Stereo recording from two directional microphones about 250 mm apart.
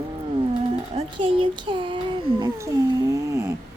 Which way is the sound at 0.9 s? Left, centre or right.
Centre.